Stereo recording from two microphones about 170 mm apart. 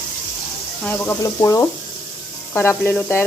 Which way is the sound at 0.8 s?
10° left (ahead or behind).